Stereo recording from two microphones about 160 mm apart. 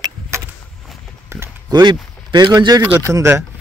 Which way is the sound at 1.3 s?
20° right (ahead or behind).